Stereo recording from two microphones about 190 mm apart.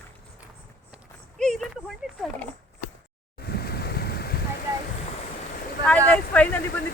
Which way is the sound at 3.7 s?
55° left (ahead or behind).